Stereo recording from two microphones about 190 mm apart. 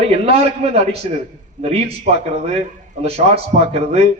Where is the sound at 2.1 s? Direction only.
35° right (ahead or behind).